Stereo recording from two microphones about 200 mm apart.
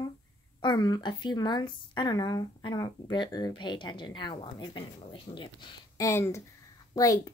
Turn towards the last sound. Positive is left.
turn(degrees=15)  # may be behind; listen again after turning